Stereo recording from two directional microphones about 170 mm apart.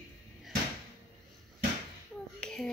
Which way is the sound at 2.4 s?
5° left (ahead or behind).